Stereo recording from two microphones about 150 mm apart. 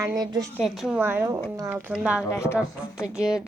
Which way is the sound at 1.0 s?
15° right (ahead or behind).